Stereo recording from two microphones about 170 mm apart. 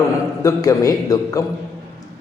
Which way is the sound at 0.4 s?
20° left (ahead or behind).